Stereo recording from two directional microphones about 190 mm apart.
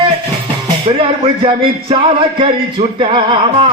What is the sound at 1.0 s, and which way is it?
Speech, 30° right (ahead or behind).